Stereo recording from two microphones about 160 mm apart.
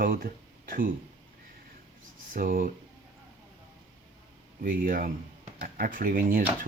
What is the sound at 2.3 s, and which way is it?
Speech, 60° right (ahead or behind).